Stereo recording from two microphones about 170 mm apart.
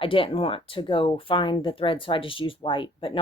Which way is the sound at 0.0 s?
30° left (ahead or behind).